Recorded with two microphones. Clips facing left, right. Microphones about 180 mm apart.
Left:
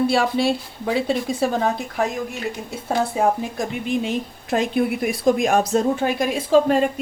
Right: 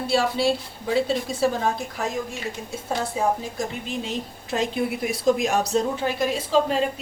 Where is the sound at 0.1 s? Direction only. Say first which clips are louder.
Left 2 dB; 55° left (ahead or behind).